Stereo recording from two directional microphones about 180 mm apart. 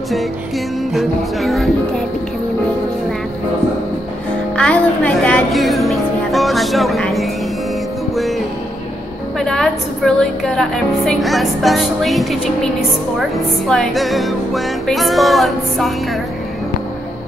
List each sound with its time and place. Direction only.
0.9 s a woman's voice: centre (ahead or behind)
4.6 s music: 5° left (ahead or behind)
9.4 s a woman's voice: 5° left (ahead or behind)
13.7 s a woman's voice: centre (ahead or behind)